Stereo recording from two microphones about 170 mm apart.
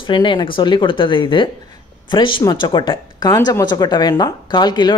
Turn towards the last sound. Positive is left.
turn(degrees=25)  # may be behind; listen again after turning